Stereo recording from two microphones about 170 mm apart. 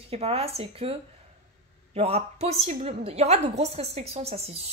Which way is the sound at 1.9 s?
35° right (ahead or behind).